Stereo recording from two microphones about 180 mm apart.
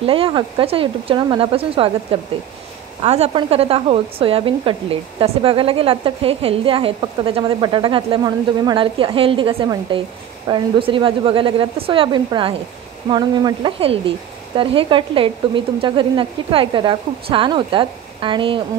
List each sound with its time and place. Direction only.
0.0 s a woman's voice: 30° right (ahead or behind)